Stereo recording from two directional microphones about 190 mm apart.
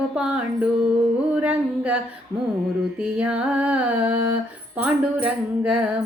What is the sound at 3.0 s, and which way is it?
Music, 5° right (ahead or behind).